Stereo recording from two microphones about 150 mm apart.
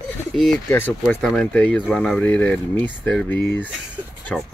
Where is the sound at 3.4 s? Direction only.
20° left (ahead or behind).